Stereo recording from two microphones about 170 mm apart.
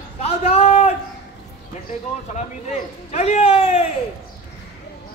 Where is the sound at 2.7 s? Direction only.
40° left (ahead or behind).